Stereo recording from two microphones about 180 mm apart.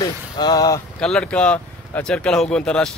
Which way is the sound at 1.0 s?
5° left (ahead or behind).